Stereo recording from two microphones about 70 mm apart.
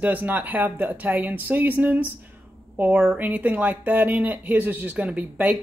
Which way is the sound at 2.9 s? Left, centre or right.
Centre.